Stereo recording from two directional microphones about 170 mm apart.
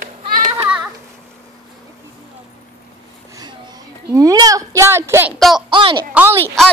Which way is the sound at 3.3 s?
25° right (ahead or behind).